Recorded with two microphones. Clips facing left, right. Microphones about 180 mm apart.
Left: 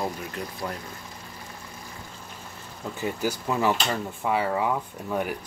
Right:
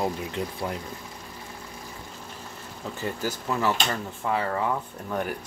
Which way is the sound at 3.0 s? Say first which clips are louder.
Left 3 dB; 15° left (ahead or behind).